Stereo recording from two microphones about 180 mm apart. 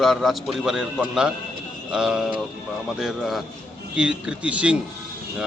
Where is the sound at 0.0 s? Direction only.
Centre (ahead or behind).